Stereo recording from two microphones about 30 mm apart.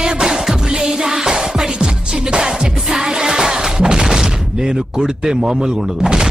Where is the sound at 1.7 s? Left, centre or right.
Right.